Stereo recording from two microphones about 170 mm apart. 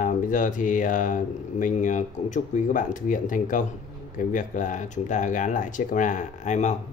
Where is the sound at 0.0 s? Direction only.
50° left (ahead or behind).